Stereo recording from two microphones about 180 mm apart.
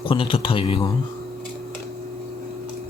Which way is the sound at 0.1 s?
30° left (ahead or behind).